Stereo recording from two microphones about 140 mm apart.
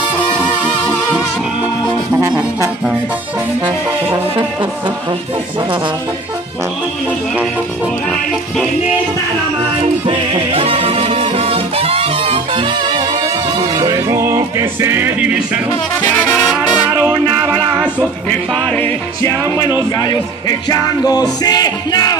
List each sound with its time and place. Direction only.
4.4 s music: 35° right (ahead or behind)
10.0 s music: 45° right (ahead or behind); by 15.6 s 10° right (ahead or behind)
16.9 s music: 20° right (ahead or behind)
18.5 s music: 5° left (ahead or behind)
20.0 s music: 30° left (ahead or behind)